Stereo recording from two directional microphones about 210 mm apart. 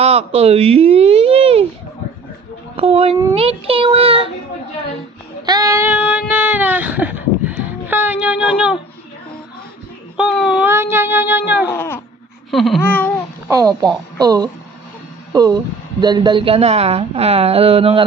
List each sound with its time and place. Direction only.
0.0 s speech: 30° right (ahead or behind)
2.7 s speech: 25° right (ahead or behind)
5.5 s a sound: 15° right (ahead or behind)
10.2 s babbling: centre (ahead or behind)
10.7 s music: 10° right (ahead or behind)
11.7 s speech: 10° left (ahead or behind)
12.5 s babbling: centre (ahead or behind)
13.5 s music: 15° right (ahead or behind)
14.2 s speech: 20° right (ahead or behind)